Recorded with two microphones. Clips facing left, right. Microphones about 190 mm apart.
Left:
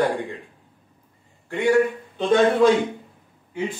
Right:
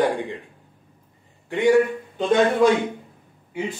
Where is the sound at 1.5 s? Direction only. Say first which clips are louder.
Right 2 dB; 15° right (ahead or behind).